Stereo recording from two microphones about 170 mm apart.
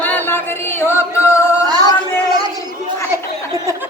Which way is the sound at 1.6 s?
25° right (ahead or behind).